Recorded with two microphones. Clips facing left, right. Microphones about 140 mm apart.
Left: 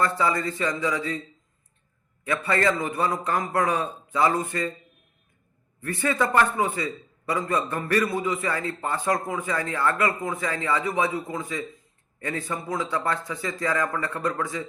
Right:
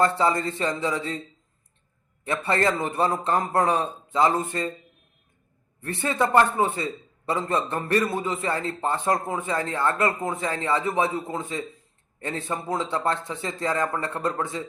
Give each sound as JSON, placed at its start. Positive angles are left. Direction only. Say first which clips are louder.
{"t": 0.2, "sound": "a man's voice", "louder": "right 1 dB", "side_deg": -25}
{"t": 2.2, "sound": "a man's voice", "louder": "even", "side_deg": -25}
{"t": 5.8, "sound": "a man's voice", "louder": "even", "side_deg": -25}